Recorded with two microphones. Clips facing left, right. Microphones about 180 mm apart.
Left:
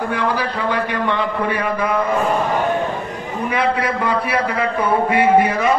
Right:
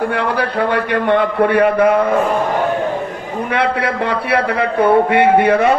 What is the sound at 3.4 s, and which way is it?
A man's voice, 65° right (ahead or behind).